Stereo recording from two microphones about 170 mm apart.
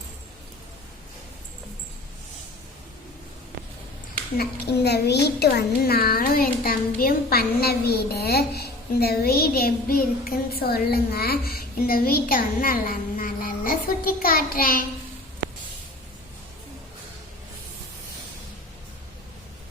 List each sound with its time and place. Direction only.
4.4 s a child's voice: 75° left (ahead or behind); by 14.8 s 55° left (ahead or behind)